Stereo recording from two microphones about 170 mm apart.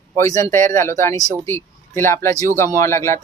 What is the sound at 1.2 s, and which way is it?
Speech, 20° right (ahead or behind).